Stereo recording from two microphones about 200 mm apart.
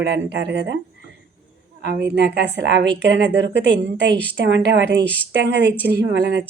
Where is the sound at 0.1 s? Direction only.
65° right (ahead or behind).